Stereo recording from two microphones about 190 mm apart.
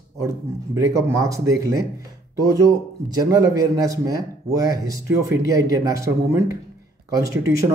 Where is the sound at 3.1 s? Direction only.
20° right (ahead or behind).